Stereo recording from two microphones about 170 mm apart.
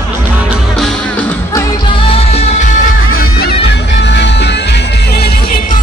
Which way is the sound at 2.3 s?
40° left (ahead or behind).